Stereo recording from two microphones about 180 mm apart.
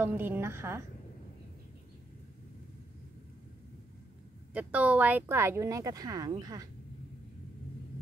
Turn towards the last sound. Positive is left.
turn(degrees=-20)  # may be behind; listen again after turning